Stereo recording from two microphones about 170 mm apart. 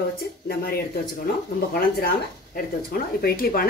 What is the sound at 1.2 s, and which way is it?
Speech, 60° left (ahead or behind).